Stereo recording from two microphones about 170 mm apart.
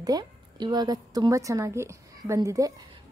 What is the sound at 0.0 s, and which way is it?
A woman's voice, 25° right (ahead or behind).